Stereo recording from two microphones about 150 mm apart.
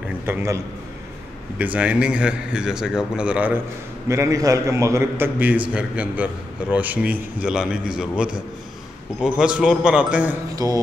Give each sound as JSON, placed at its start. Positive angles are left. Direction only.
{"t": 0.2, "sound": "a man's voice", "side_deg": -15}
{"t": 1.6, "sound": "a man's voice", "side_deg": -10}
{"t": 10.5, "sound": "a man's voice", "side_deg": -25}